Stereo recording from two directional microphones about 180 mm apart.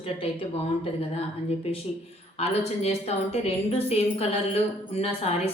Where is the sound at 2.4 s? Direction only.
35° left (ahead or behind).